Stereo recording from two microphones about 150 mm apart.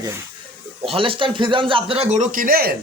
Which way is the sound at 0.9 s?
35° right (ahead or behind).